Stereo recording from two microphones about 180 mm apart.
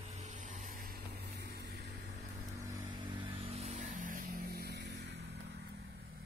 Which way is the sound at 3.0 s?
25° right (ahead or behind).